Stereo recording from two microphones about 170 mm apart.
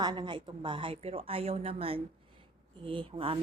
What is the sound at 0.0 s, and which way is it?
Speech, 25° right (ahead or behind).